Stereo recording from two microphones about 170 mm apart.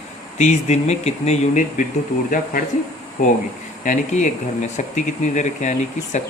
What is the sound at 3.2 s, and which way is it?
Speech, 55° left (ahead or behind).